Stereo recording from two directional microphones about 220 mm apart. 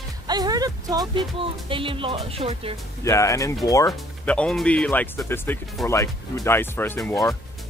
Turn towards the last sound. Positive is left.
turn(degrees=10)  # may be behind; listen again after turning